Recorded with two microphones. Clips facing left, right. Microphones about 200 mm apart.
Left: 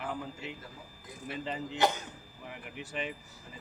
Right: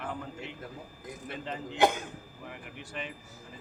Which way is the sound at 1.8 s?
50° right (ahead or behind).